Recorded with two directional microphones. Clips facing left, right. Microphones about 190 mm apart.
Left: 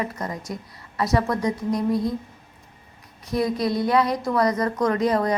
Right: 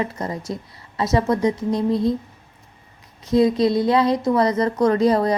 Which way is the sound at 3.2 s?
25° right (ahead or behind).